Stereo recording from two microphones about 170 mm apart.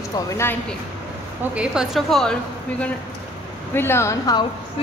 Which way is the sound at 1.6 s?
Centre (ahead or behind).